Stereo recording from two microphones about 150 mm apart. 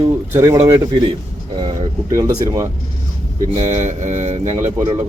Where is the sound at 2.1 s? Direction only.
20° right (ahead or behind).